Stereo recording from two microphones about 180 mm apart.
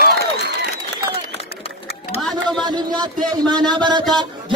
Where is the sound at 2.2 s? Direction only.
Centre (ahead or behind).